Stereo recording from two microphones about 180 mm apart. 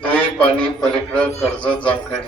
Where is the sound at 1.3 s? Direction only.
25° left (ahead or behind).